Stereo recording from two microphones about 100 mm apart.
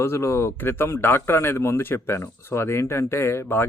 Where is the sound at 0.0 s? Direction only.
30° left (ahead or behind).